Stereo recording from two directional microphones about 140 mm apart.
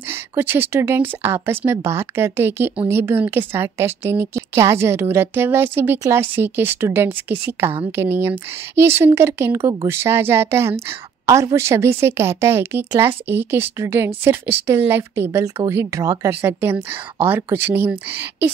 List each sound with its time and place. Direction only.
0.4 s a woman's voice: 15° right (ahead or behind)